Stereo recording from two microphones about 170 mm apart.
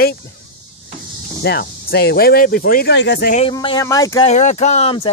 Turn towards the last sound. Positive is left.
turn(degrees=35)  # may be behind; listen again after turning